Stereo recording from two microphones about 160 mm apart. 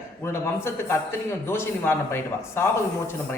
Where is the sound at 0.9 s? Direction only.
10° left (ahead or behind).